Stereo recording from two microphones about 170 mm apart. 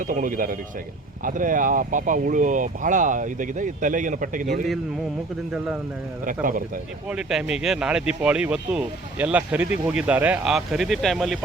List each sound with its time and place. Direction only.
0.0 s speech: 50° right (ahead or behind)
5.5 s speech: 5° right (ahead or behind)
6.2 s speech: 55° right (ahead or behind)
7.1 s speech: 5° right (ahead or behind)